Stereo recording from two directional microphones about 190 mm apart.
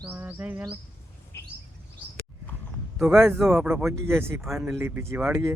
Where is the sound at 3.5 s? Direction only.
10° right (ahead or behind).